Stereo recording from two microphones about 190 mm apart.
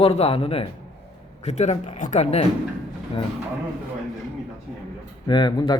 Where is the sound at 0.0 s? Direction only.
30° left (ahead or behind).